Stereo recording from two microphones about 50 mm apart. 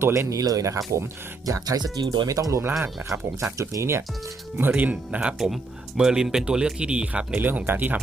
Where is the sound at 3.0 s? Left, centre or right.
Right.